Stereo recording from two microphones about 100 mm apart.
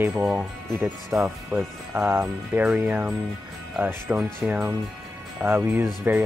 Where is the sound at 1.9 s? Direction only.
20° right (ahead or behind).